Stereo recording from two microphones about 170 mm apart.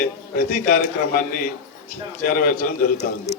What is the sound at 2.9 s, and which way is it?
Speech, 40° left (ahead or behind).